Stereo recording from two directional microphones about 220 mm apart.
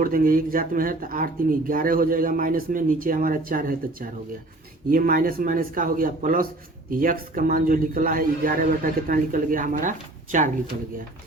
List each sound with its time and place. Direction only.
0.0 s speech: 40° right (ahead or behind)